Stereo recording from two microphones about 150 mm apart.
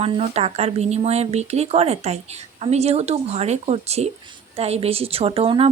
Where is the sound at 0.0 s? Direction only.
45° right (ahead or behind).